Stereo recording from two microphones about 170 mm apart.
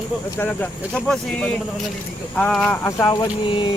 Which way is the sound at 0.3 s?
10° left (ahead or behind).